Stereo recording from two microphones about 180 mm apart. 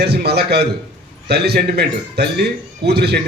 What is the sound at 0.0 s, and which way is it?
A man's voice, 65° right (ahead or behind).